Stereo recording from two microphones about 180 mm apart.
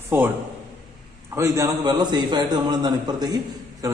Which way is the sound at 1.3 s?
15° right (ahead or behind).